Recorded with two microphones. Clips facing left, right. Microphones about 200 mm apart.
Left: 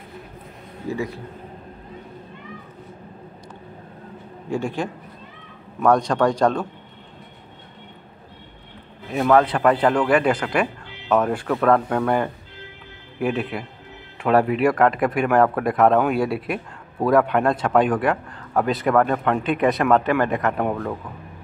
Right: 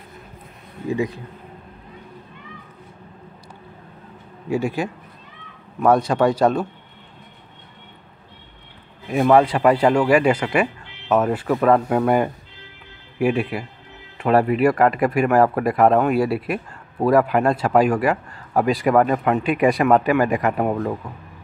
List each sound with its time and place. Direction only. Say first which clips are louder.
0.8 s speech: right 4 dB; 15° right (ahead or behind)
4.5 s speech: right 3 dB; 10° right (ahead or behind)
9.1 s speech: right 2 dB; 10° right (ahead or behind)